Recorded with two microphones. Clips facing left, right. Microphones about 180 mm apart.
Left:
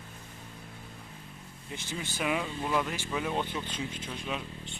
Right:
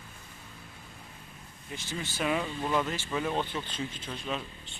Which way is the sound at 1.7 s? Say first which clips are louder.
Even; 20° left (ahead or behind).